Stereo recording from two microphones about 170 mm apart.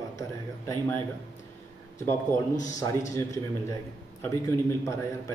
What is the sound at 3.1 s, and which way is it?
A man's voice, 20° left (ahead or behind).